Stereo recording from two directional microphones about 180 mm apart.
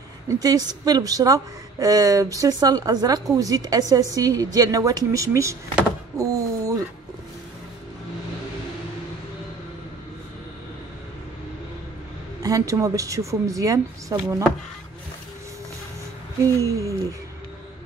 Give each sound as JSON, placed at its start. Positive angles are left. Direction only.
{"t": 0.3, "sound": "a woman's voice", "side_deg": -20}
{"t": 6.1, "sound": "a sound", "side_deg": -20}
{"t": 12.4, "sound": "a woman's voice", "side_deg": -20}
{"t": 16.6, "sound": "a woman's voice", "side_deg": -15}